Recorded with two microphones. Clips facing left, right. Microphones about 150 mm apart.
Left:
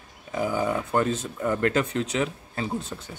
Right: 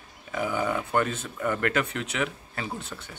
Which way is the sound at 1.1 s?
35° left (ahead or behind).